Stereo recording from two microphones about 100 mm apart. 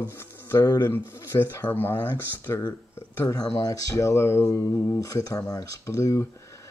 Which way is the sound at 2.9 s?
25° left (ahead or behind).